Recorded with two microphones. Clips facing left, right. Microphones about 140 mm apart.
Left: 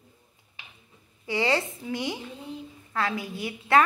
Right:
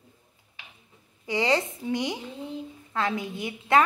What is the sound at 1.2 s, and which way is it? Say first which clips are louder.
A woman's voice: right 1 dB; 20° right (ahead or behind).